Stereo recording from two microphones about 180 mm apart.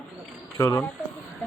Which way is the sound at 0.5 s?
15° left (ahead or behind).